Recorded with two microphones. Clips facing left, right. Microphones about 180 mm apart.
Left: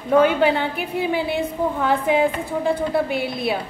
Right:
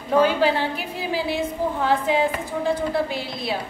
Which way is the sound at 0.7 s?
60° left (ahead or behind).